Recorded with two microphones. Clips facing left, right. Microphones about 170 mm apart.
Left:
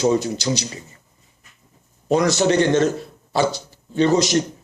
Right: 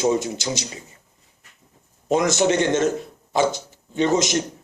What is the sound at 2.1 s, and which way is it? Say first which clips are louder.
Speech: left 2 dB; 20° right (ahead or behind).